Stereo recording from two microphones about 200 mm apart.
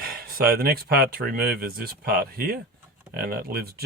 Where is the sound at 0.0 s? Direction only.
50° right (ahead or behind).